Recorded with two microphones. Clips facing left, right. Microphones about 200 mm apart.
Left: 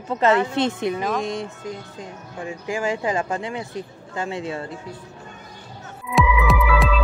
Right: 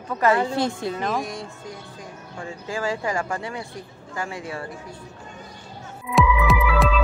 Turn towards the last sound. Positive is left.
turn(degrees=0)  # may be behind; listen again after turning